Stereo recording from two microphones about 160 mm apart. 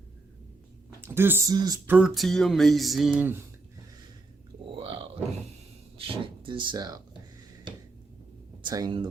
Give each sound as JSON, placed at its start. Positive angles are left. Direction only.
{"t": 0.9, "sound": "speech", "side_deg": -15}
{"t": 1.9, "sound": "music", "side_deg": -5}
{"t": 3.2, "sound": "speech", "side_deg": -10}
{"t": 4.7, "sound": "a sound", "side_deg": -30}
{"t": 6.0, "sound": "speech", "side_deg": -35}
{"t": 8.6, "sound": "speech", "side_deg": -25}